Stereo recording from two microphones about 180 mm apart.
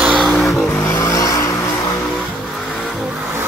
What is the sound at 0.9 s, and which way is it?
Vehicle, 20° left (ahead or behind).